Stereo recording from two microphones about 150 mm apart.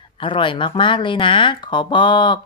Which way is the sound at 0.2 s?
35° left (ahead or behind).